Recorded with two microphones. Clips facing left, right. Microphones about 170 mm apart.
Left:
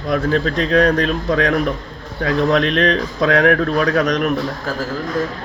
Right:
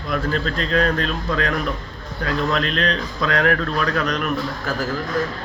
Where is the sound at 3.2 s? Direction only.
55° left (ahead or behind).